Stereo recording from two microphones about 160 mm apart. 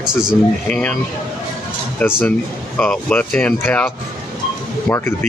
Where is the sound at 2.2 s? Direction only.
10° left (ahead or behind).